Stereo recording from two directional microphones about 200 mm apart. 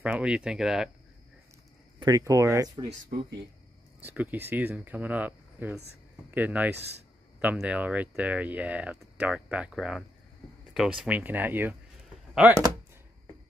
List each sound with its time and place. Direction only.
0.0 s speech: 5° right (ahead or behind)
2.0 s speech: 20° right (ahead or behind)
4.0 s speech: 10° right (ahead or behind)